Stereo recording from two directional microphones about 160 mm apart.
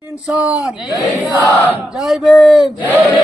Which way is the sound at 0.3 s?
10° right (ahead or behind).